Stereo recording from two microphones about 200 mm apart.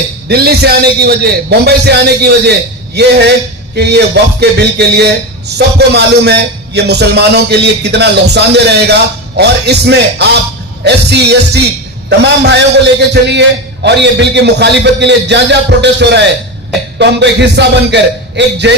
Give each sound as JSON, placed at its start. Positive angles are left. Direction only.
{"t": 0.3, "sound": "a man's voice", "side_deg": -50}